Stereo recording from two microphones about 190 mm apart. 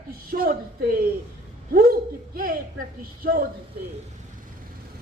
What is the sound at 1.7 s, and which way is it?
Speech, 50° right (ahead or behind).